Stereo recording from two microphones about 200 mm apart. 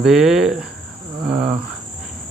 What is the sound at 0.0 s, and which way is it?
Speech, centre (ahead or behind).